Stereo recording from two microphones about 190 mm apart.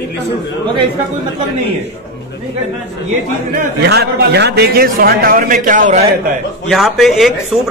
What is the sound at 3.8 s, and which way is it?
A man's voice, 60° right (ahead or behind).